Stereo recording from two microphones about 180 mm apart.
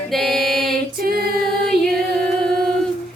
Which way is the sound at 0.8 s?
55° right (ahead or behind).